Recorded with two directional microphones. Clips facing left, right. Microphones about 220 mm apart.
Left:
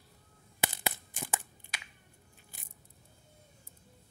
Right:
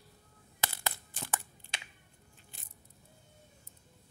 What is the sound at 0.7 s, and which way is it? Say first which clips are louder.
Tearing: left 3 dB; 15° left (ahead or behind).